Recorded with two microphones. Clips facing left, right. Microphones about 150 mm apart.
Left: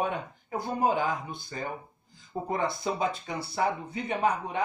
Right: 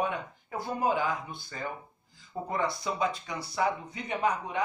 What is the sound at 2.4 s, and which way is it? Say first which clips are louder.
Speech: left 2 dB; 25° left (ahead or behind).